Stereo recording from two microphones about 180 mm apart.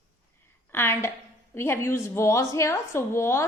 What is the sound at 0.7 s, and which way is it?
A woman's voice, 15° left (ahead or behind).